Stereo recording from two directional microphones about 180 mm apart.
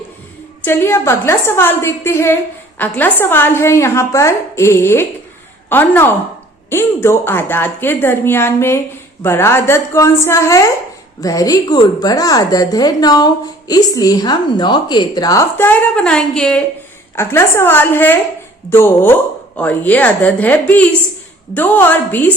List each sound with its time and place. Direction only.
0.6 s a woman's voice: 15° left (ahead or behind)